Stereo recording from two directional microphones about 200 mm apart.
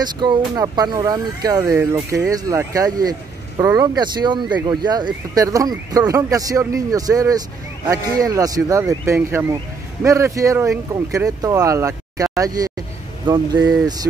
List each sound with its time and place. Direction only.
0.0 s speech: 20° right (ahead or behind)